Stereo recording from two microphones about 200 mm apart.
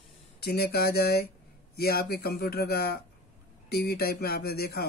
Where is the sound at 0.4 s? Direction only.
50° left (ahead or behind).